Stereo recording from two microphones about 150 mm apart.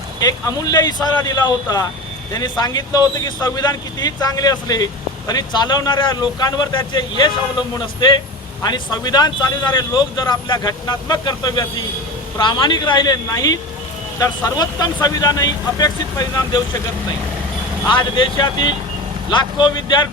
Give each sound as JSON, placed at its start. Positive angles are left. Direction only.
{"t": 0.2, "sound": "speech", "side_deg": 25}
{"t": 8.6, "sound": "speech", "side_deg": 30}
{"t": 17.8, "sound": "speech", "side_deg": 30}